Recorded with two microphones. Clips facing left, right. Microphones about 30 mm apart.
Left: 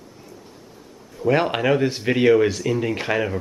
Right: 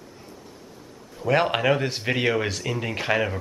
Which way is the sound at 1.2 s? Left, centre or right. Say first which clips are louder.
Left 2 dB; centre.